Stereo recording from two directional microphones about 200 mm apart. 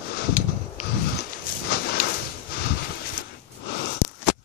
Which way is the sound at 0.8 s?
50° left (ahead or behind).